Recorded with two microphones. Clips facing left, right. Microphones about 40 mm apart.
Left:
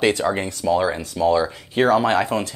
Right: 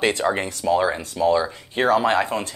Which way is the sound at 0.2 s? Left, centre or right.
Centre.